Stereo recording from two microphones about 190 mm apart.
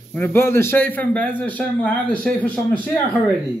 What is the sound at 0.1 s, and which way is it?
A man's voice, 10° left (ahead or behind).